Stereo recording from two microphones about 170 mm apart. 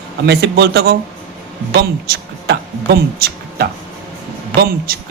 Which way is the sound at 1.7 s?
70° right (ahead or behind).